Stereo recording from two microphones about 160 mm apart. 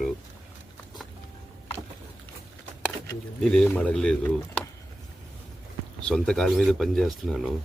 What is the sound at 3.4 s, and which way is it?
Speech, 5° left (ahead or behind).